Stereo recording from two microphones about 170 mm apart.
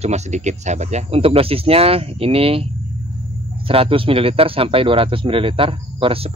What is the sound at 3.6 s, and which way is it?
Speech, 30° right (ahead or behind).